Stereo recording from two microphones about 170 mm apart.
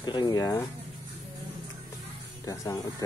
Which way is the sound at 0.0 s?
25° left (ahead or behind).